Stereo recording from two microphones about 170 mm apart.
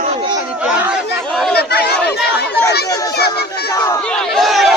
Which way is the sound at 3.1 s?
70° left (ahead or behind).